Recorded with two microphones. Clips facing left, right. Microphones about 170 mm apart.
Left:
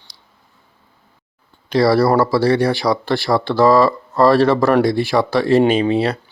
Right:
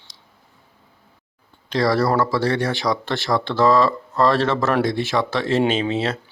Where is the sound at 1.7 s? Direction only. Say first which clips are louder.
Left 5 dB; 10° left (ahead or behind).